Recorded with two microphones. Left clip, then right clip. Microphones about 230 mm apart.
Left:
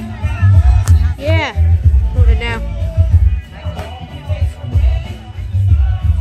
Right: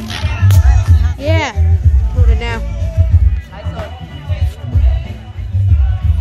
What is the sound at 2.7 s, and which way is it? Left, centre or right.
Music, left.